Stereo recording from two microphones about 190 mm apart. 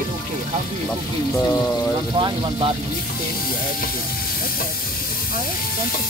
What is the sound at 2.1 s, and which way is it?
Speech, 25° right (ahead or behind).